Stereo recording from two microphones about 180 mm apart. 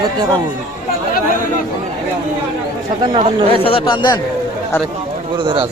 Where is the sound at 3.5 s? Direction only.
30° left (ahead or behind).